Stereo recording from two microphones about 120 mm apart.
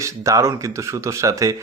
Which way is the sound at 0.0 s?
25° right (ahead or behind).